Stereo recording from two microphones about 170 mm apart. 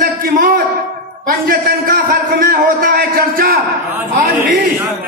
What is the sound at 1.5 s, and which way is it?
A man's voice, 55° right (ahead or behind).